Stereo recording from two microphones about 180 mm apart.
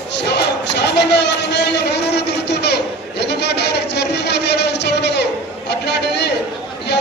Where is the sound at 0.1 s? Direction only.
70° left (ahead or behind).